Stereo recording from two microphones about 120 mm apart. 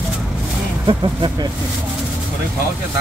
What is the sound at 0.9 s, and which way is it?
Speech, 40° right (ahead or behind).